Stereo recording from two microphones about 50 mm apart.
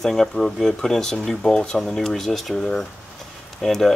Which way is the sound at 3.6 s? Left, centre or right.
Centre.